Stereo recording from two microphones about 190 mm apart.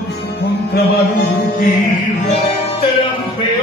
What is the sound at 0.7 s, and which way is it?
Music, 55° left (ahead or behind).